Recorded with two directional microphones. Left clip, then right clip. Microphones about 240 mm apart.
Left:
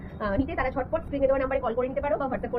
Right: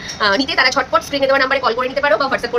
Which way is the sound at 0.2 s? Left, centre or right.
Right.